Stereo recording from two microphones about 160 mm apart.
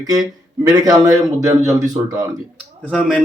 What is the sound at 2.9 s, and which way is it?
Speech, 5° left (ahead or behind).